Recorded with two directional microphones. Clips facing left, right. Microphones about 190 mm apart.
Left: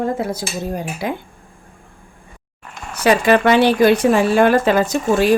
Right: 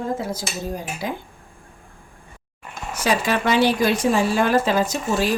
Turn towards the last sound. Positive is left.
turn(degrees=60)  # may be behind; listen again after turning